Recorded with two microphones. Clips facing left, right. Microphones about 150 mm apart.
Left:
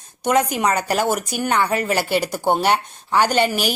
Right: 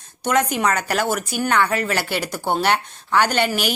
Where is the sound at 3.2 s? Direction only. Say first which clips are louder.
Left 2 dB; 40° left (ahead or behind).